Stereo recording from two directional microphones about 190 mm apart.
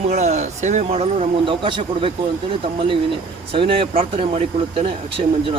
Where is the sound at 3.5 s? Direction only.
30° right (ahead or behind).